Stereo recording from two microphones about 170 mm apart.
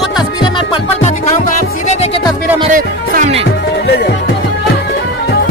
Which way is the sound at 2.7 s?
50° right (ahead or behind).